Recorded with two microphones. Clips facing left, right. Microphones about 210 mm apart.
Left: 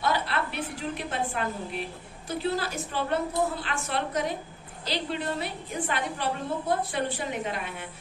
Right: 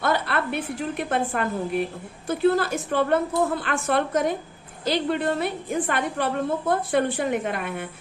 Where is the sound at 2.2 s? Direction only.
55° right (ahead or behind).